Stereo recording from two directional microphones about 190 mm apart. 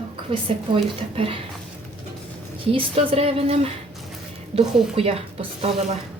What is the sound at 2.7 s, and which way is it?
A woman's voice, 30° right (ahead or behind).